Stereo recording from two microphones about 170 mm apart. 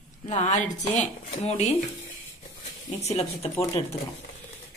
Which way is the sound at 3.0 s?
40° left (ahead or behind).